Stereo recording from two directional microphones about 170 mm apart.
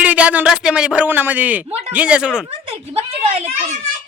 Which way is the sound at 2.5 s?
35° right (ahead or behind).